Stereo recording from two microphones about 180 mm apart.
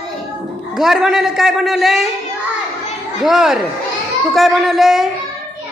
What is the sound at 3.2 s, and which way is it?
A man's voice, 5° right (ahead or behind).